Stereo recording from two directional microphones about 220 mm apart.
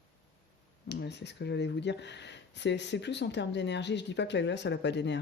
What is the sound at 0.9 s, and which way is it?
Speech, 50° left (ahead or behind).